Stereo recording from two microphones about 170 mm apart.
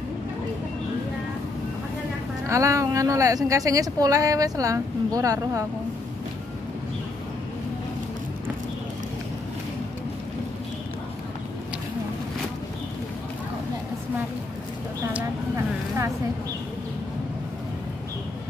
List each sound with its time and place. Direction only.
2.4 s a woman's voice: 20° right (ahead or behind)